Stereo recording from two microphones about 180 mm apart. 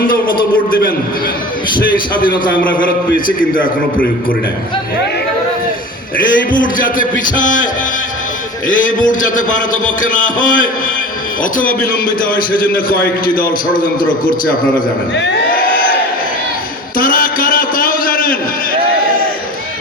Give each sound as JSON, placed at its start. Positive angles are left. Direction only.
{"t": 0.1, "sound": "a sound", "side_deg": 50}
{"t": 1.8, "sound": "a man's voice", "side_deg": 50}
{"t": 6.1, "sound": "a man's voice", "side_deg": 50}
{"t": 8.6, "sound": "a man's voice", "side_deg": 45}
{"t": 15.1, "sound": "speech", "side_deg": 80}
{"t": 15.5, "sound": "crowd", "side_deg": 50}
{"t": 17.0, "sound": "a sound", "side_deg": 50}